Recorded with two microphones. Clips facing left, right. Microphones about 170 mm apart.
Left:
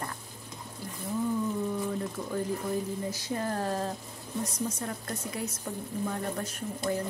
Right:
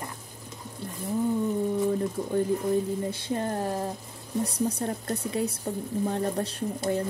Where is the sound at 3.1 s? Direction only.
25° right (ahead or behind).